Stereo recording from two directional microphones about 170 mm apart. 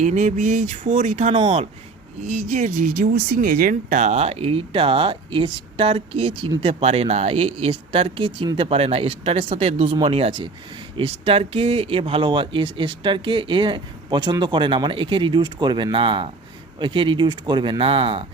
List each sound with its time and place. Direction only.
0.0 s speech: 45° right (ahead or behind)